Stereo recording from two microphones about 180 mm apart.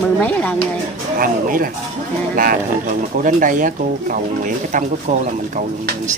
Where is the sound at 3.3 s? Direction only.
45° right (ahead or behind).